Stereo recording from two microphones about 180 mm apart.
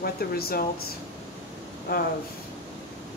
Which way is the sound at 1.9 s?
60° left (ahead or behind).